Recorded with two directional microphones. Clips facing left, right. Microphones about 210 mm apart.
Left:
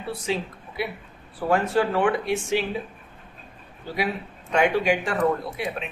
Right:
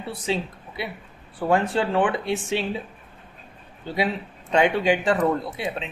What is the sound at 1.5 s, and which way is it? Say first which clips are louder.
Speech: even; 25° right (ahead or behind).